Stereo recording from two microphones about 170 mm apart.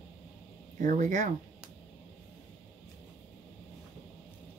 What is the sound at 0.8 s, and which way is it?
Speech, 45° right (ahead or behind).